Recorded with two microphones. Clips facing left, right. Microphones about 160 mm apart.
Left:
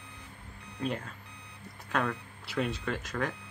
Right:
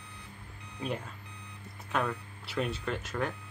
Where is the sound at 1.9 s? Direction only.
5° right (ahead or behind).